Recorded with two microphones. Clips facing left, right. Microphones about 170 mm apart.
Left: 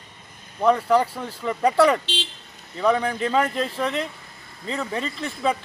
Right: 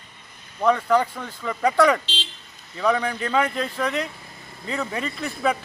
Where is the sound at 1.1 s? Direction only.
30° left (ahead or behind).